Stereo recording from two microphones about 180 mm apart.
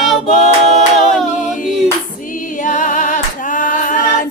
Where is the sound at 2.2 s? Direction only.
45° left (ahead or behind).